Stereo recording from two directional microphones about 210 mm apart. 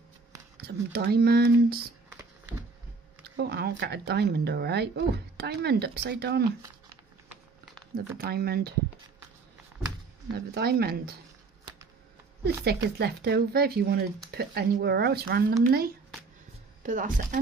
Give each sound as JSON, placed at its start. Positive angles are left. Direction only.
{"t": 0.6, "sound": "speech", "side_deg": -50}
{"t": 3.3, "sound": "speech", "side_deg": -50}
{"t": 7.2, "sound": "a sound", "side_deg": 0}
{"t": 7.9, "sound": "speech", "side_deg": -45}
{"t": 10.3, "sound": "speech", "side_deg": -50}
{"t": 12.4, "sound": "speech", "side_deg": -50}
{"t": 16.8, "sound": "speech", "side_deg": -40}